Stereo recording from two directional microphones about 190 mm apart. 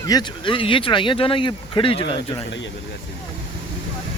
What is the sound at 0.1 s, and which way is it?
Speech, 25° left (ahead or behind).